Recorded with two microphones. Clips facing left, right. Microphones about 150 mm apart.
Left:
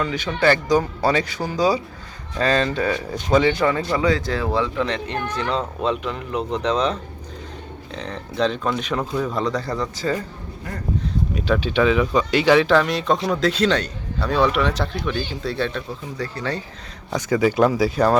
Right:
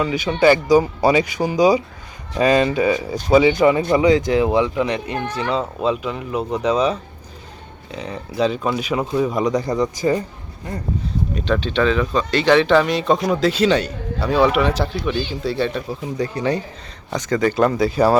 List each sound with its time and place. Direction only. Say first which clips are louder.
0.0 s speech: right 4 dB; 10° right (ahead or behind)
11.3 s a man's voice: even; 5° left (ahead or behind)
16.1 s speech: right 6 dB; 20° right (ahead or behind)
17.1 s a man's voice: even; 5° left (ahead or behind)